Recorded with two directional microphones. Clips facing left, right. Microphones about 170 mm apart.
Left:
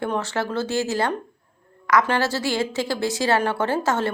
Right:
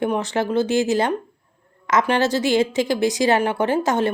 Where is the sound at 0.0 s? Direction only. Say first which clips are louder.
Right 4 dB; 20° right (ahead or behind).